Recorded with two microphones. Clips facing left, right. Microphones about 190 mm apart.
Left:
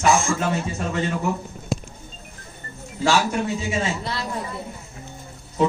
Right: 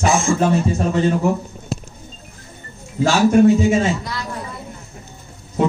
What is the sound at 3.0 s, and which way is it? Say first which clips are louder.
Speech: right 9 dB; 50° right (ahead or behind).